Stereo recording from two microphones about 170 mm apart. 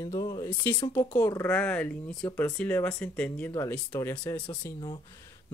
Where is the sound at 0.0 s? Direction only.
20° left (ahead or behind).